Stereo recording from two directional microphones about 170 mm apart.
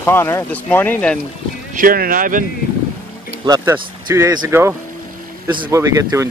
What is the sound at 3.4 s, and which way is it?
Speech, 25° right (ahead or behind).